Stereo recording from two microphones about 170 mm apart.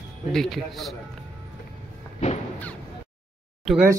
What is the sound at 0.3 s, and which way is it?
Speech, centre (ahead or behind).